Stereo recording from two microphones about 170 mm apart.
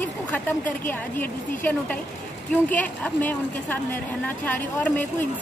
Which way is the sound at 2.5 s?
10° left (ahead or behind).